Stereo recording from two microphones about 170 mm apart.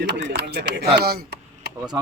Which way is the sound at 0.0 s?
90° right.